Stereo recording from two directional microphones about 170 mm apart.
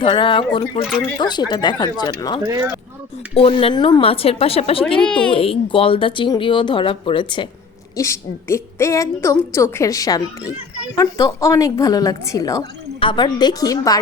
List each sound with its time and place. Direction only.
0.0 s speech: 30° left (ahead or behind)
2.4 s speech: 20° right (ahead or behind)
3.3 s speech: 35° left (ahead or behind)
4.9 s speech: 5° left (ahead or behind)
5.3 s speech: 30° left (ahead or behind)
7.9 s a woman's voice: 15° left (ahead or behind)